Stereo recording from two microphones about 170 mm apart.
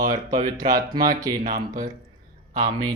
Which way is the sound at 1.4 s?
50° right (ahead or behind).